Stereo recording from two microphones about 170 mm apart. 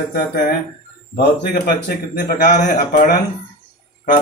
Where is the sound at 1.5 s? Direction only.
60° left (ahead or behind).